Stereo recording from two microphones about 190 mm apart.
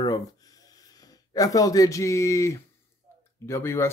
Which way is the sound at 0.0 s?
20° left (ahead or behind).